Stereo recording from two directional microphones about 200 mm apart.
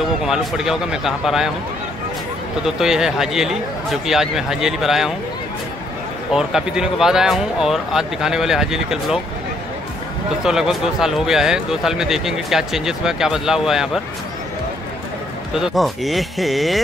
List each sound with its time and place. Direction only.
0.2 s speech: centre (ahead or behind)
2.6 s speech: centre (ahead or behind)
6.3 s speech: 5° right (ahead or behind)
10.4 s speech: centre (ahead or behind)
15.5 s speech: centre (ahead or behind)